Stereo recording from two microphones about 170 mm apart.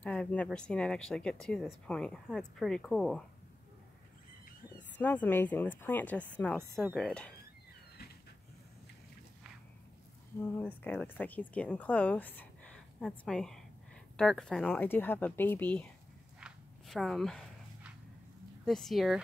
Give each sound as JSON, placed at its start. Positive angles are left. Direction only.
{"t": 0.0, "sound": "a woman's voice", "side_deg": 5}
{"t": 4.7, "sound": "a woman's voice", "side_deg": 10}
{"t": 10.6, "sound": "speech", "side_deg": 10}
{"t": 16.3, "sound": "dog", "side_deg": 0}
{"t": 18.7, "sound": "a woman's voice", "side_deg": 0}